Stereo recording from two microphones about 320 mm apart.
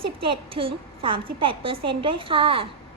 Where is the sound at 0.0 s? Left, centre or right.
Centre.